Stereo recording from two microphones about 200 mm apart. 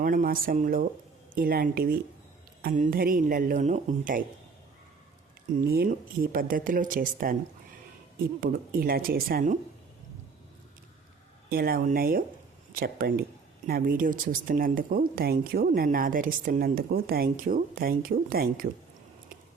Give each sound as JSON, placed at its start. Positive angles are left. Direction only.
{"t": 0.0, "sound": "speech", "side_deg": -45}
{"t": 5.6, "sound": "speech", "side_deg": -50}
{"t": 8.4, "sound": "speech", "side_deg": -50}
{"t": 11.4, "sound": "speech", "side_deg": -50}